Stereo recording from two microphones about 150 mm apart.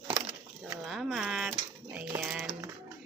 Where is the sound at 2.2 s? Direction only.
Centre (ahead or behind).